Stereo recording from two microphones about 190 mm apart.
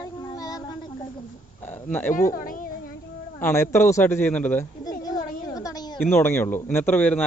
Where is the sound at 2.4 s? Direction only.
45° left (ahead or behind).